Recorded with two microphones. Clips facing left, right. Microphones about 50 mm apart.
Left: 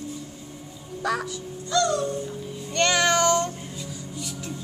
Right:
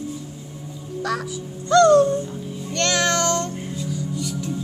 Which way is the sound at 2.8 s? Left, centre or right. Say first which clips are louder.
Even; centre.